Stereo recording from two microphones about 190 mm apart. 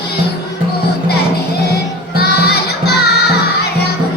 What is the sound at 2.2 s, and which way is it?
Crowd, 55° left (ahead or behind).